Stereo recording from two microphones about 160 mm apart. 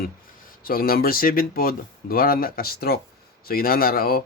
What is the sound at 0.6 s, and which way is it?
Speech, 65° left (ahead or behind).